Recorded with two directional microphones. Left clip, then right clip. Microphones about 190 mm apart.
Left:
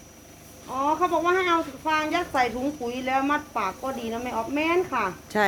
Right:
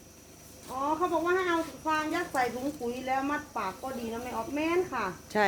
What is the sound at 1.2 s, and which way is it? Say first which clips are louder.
Speech: left 6 dB; 20° left (ahead or behind).